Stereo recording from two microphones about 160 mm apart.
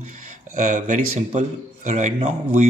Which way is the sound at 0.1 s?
50° right (ahead or behind).